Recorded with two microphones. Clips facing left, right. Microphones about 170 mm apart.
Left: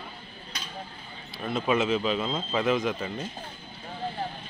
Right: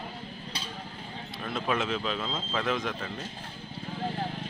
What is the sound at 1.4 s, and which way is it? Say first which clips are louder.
Speech: left 5 dB; 5° left (ahead or behind).